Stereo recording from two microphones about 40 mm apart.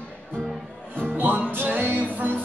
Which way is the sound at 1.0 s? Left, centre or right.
Right.